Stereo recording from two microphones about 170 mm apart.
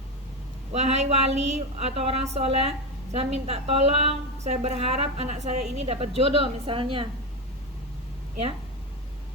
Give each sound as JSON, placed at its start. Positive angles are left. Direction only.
{"t": 0.7, "sound": "a woman's voice", "side_deg": -40}